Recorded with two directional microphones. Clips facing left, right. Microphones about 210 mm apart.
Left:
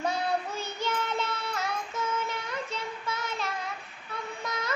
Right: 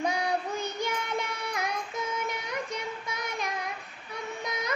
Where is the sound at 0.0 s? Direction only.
15° right (ahead or behind).